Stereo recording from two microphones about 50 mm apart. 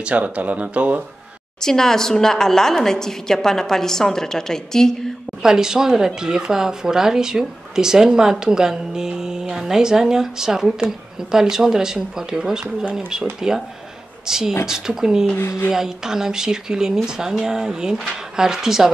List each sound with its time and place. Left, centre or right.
0.0 s speech: right
1.6 s a woman's voice: centre
5.4 s a woman's voice: centre